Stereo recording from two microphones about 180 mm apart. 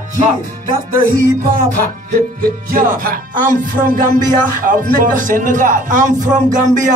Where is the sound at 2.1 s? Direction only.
50° right (ahead or behind).